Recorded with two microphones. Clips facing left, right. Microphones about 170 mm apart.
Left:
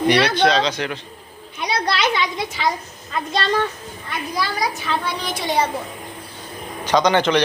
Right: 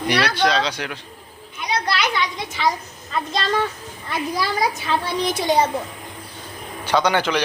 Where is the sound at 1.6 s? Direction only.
30° left (ahead or behind).